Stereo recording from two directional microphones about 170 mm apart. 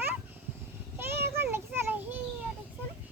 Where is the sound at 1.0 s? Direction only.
15° right (ahead or behind).